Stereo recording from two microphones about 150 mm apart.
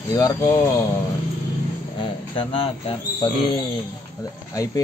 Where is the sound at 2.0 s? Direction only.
35° left (ahead or behind).